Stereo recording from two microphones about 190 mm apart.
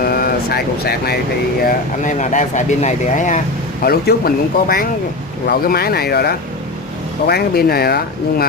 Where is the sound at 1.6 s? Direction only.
40° left (ahead or behind).